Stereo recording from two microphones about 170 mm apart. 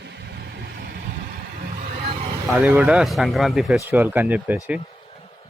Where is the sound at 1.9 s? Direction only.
40° right (ahead or behind).